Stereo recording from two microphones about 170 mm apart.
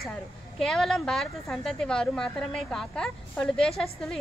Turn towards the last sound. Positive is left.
turn(degrees=0)  # may be behind; listen again after turning